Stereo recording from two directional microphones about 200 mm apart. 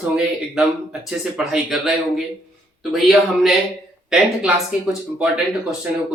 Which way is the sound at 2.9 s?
Centre (ahead or behind).